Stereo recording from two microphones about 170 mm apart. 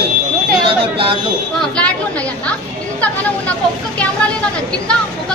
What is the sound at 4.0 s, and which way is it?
Speech, 5° left (ahead or behind).